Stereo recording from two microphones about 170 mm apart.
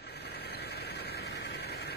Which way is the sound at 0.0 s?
75° left (ahead or behind).